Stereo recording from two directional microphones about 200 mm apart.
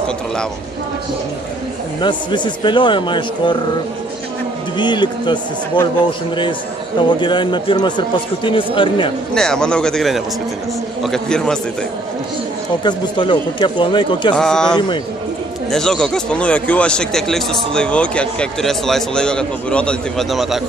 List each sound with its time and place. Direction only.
2.0 s speech: 25° left (ahead or behind)
4.7 s speech: 20° left (ahead or behind)
7.0 s speech: 25° left (ahead or behind)
9.3 s speech: 5° left (ahead or behind)
12.8 s speech: 25° left (ahead or behind)
14.3 s speech: 5° left (ahead or behind)